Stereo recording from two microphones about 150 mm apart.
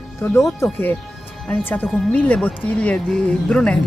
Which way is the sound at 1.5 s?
15° left (ahead or behind).